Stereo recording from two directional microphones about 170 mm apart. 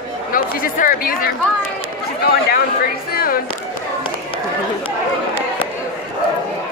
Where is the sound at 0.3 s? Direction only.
55° left (ahead or behind).